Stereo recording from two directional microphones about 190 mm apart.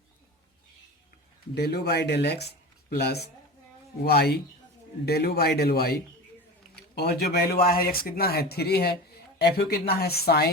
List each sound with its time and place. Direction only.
1.5 s speech: 60° left (ahead or behind)